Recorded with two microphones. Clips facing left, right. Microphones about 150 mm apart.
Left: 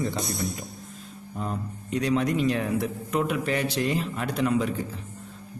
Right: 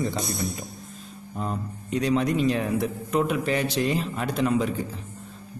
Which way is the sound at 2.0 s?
25° right (ahead or behind).